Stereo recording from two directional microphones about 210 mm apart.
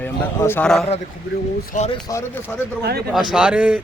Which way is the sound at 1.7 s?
35° left (ahead or behind).